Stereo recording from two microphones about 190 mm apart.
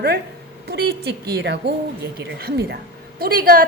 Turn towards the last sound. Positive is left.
turn(degrees=-50)  # may be behind; listen again after turning